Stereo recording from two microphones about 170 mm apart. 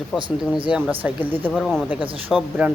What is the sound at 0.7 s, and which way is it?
Speech, 5° right (ahead or behind).